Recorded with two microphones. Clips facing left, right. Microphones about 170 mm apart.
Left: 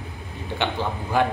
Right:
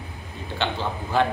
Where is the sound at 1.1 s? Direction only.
15° left (ahead or behind).